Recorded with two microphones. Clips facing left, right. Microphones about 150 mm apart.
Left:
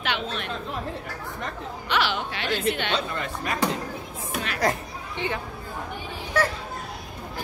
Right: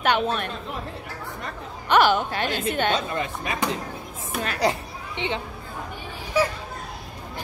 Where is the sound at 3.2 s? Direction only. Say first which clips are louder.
Right 1 dB; 20° right (ahead or behind).